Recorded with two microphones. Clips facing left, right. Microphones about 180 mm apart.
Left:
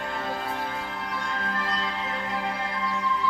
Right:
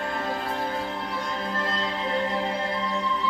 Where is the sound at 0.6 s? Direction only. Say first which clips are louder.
Right 3 dB; 30° right (ahead or behind).